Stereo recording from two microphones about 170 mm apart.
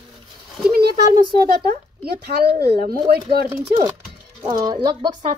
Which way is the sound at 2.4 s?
65° right (ahead or behind).